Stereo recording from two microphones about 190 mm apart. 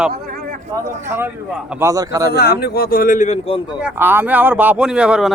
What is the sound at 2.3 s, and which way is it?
Speech, 55° left (ahead or behind).